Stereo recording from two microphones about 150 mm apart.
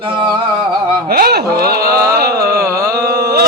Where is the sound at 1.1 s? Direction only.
90° right.